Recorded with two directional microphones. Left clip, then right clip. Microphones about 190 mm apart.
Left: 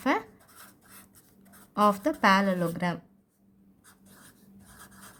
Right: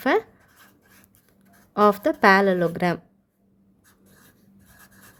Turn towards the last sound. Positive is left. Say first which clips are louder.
# left 1 dB
turn(degrees=-5)  # may be behind; listen again after turning